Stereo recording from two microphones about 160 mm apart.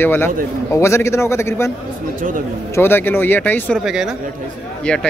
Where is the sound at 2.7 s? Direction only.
15° left (ahead or behind).